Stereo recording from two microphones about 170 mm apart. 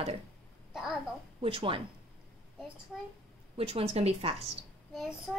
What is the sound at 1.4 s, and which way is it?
Speech, 35° right (ahead or behind).